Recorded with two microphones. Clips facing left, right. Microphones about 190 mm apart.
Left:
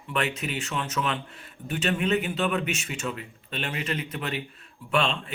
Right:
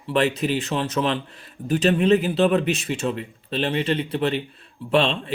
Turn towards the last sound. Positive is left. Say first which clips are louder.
# right 6 dB
turn(degrees=-35)  # may be behind; listen again after turning